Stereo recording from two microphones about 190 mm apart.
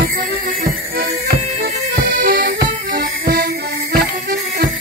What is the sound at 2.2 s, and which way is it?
Music, 55° right (ahead or behind).